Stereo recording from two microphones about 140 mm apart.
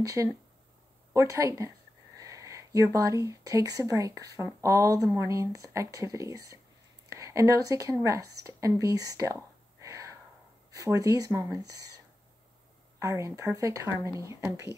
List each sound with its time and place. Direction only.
0.0 s speech: 25° right (ahead or behind)
13.0 s speech: 20° right (ahead or behind)